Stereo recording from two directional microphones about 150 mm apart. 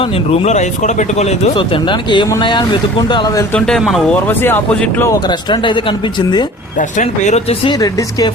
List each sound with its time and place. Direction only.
0.0 s speech: 50° left (ahead or behind); by 3.4 s 30° left (ahead or behind)
3.5 s speech: centre (ahead or behind)
4.3 s speech: 15° left (ahead or behind)
5.0 s speech: 25° left (ahead or behind)
6.7 s speech: 55° left (ahead or behind)
7.6 s speech: 30° left (ahead or behind)